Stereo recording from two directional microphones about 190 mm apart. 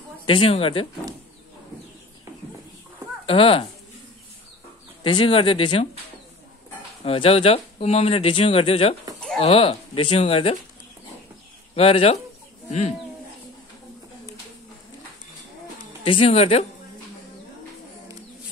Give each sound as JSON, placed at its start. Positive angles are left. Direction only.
{"t": 0.2, "sound": "speech", "side_deg": 25}
{"t": 3.3, "sound": "speech", "side_deg": 30}
{"t": 5.0, "sound": "speech", "side_deg": 30}
{"t": 7.1, "sound": "speech", "side_deg": 30}
{"t": 11.7, "sound": "speech", "side_deg": 30}
{"t": 16.0, "sound": "speech", "side_deg": 30}